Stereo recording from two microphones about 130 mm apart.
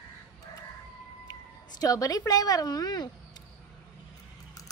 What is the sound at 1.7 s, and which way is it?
A woman's voice, 25° left (ahead or behind).